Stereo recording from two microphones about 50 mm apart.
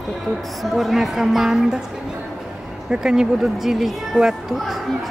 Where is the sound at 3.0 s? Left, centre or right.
Centre.